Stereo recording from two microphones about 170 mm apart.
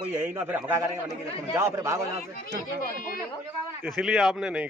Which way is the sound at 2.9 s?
55° left (ahead or behind).